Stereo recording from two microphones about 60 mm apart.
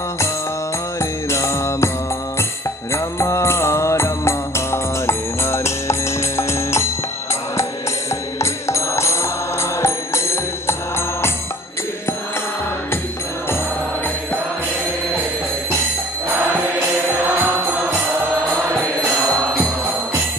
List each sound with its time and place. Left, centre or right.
0.9 s music: left
2.9 s music: left
8.4 s music: left